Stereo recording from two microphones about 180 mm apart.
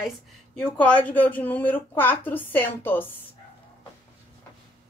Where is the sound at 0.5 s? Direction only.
5° left (ahead or behind).